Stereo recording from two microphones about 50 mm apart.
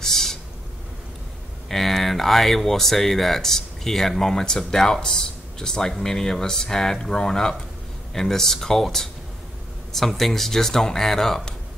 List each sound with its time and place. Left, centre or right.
0.0 s owl: centre
1.7 s speech: centre